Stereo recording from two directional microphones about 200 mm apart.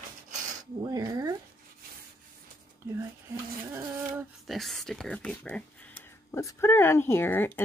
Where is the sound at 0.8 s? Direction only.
20° right (ahead or behind).